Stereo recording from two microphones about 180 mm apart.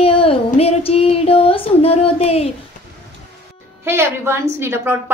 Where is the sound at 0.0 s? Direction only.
30° left (ahead or behind).